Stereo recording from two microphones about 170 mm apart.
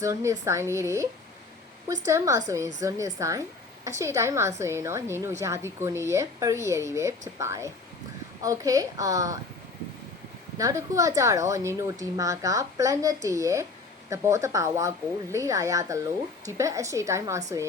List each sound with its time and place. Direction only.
0.0 s a woman's voice: 15° right (ahead or behind)
10.6 s a woman's voice: 20° right (ahead or behind)